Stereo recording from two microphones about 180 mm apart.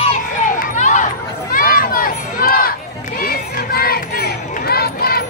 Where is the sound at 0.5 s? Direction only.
45° left (ahead or behind).